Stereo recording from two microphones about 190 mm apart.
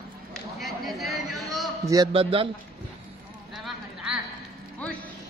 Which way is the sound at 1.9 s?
25° right (ahead or behind).